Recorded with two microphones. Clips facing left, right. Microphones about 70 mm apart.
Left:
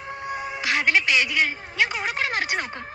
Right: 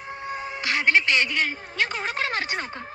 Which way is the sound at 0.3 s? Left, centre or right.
Centre.